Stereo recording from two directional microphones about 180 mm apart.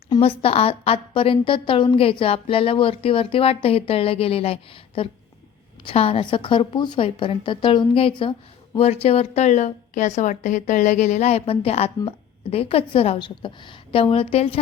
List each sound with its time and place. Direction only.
0.2 s a woman's voice: 30° left (ahead or behind)